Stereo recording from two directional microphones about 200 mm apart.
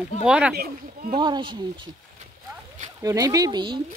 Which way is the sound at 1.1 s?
25° right (ahead or behind).